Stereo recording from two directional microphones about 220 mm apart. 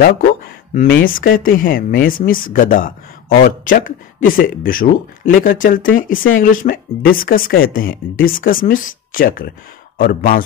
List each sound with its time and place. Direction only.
0.7 s speech: 45° left (ahead or behind)